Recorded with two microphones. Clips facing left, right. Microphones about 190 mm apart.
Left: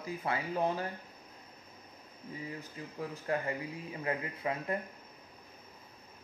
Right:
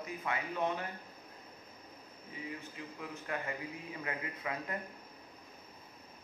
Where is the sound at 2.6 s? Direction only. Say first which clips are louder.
Left 4 dB; 35° left (ahead or behind).